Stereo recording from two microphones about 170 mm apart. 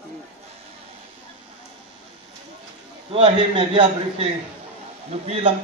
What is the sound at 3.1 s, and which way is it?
A man's voice, 30° right (ahead or behind).